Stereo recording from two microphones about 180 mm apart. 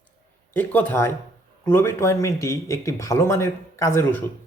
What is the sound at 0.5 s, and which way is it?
Speech, 10° left (ahead or behind).